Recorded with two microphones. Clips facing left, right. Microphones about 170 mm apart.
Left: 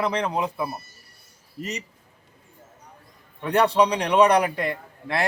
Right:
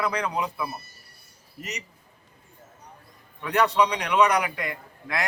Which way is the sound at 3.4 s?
30° left (ahead or behind).